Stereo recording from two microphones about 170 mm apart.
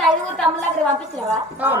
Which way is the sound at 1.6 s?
10° right (ahead or behind).